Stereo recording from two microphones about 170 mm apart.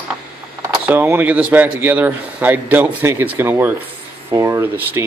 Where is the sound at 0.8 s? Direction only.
10° right (ahead or behind).